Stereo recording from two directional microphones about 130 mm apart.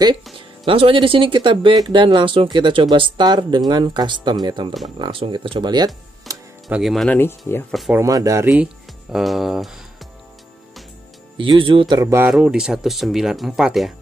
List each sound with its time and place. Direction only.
0.7 s speech: 45° right (ahead or behind)
6.3 s music: centre (ahead or behind)
6.7 s speech: centre (ahead or behind)
7.1 s speech: 15° left (ahead or behind)
8.1 s speech: 25° right (ahead or behind)
9.1 s speech: centre (ahead or behind)
11.3 s speech: 40° right (ahead or behind)
12.0 s speech: 20° right (ahead or behind)
12.3 s speech: 5° right (ahead or behind)